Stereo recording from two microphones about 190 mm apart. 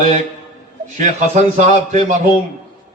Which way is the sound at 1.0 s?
40° right (ahead or behind).